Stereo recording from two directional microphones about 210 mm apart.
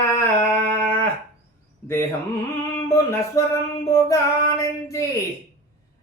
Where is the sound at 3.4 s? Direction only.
15° left (ahead or behind).